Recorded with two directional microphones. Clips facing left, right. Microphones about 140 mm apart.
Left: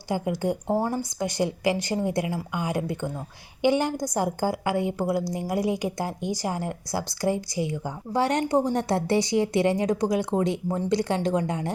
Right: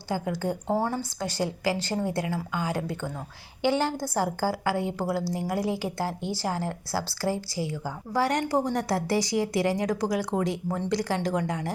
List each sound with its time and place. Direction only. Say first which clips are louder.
0.1 s a woman's voice: left 3 dB; 15° left (ahead or behind)